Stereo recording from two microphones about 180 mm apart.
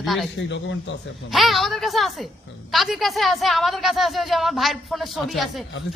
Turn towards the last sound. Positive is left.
turn(degrees=0)  # may be behind; listen again after turning